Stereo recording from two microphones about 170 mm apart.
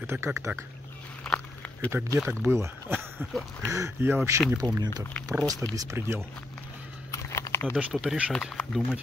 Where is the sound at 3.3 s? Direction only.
Centre (ahead or behind).